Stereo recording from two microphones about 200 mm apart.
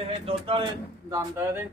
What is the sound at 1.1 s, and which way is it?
Speech, 10° right (ahead or behind).